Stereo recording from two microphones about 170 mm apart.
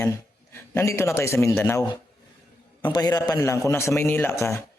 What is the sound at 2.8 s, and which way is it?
Speech, 25° left (ahead or behind).